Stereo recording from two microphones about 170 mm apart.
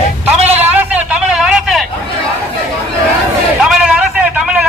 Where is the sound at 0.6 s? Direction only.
10° right (ahead or behind).